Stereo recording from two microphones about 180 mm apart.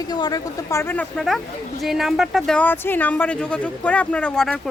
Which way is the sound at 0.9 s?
5° left (ahead or behind).